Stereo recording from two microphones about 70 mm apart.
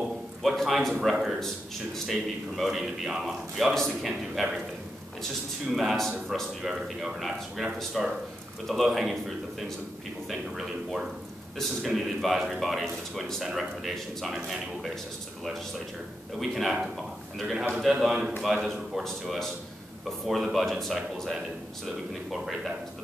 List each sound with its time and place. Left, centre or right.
0.4 s a man's voice: centre
5.7 s a man's voice: centre
10.6 s a man's voice: centre
16.3 s a man's voice: centre